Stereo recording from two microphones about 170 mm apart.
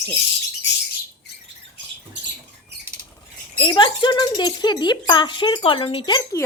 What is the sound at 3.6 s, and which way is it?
Speech, 30° left (ahead or behind).